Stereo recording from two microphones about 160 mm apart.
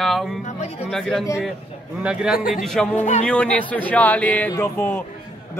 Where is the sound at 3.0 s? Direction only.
45° left (ahead or behind).